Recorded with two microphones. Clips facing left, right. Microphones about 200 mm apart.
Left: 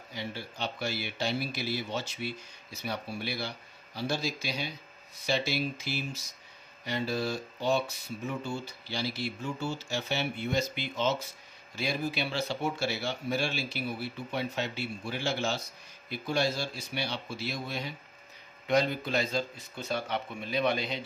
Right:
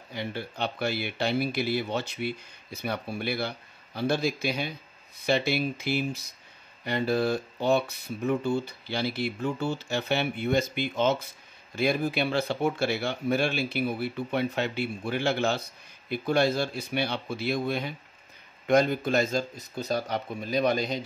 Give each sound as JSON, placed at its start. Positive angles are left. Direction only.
{"t": 0.1, "sound": "speech", "side_deg": -55}